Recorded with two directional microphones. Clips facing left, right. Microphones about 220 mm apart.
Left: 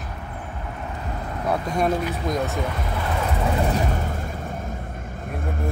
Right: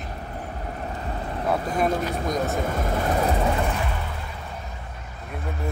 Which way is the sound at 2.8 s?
45° right (ahead or behind).